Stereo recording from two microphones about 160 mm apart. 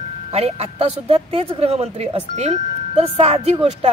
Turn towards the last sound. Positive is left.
turn(degrees=-40)  # may be behind; listen again after turning